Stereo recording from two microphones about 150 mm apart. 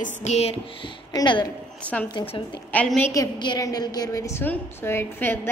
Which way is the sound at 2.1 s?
35° left (ahead or behind).